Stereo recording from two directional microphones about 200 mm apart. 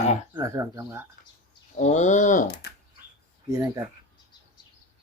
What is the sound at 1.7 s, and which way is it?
Speech, 35° left (ahead or behind).